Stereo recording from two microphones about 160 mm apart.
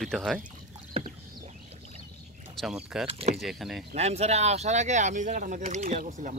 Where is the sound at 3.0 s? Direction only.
35° right (ahead or behind).